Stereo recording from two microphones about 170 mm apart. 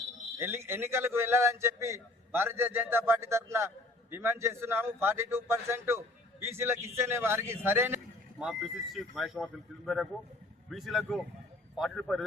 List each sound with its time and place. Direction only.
0.3 s a man's voice: 15° right (ahead or behind)
8.4 s speech: 5° right (ahead or behind)